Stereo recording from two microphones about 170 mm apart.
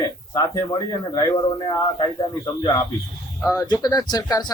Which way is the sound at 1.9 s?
25° left (ahead or behind).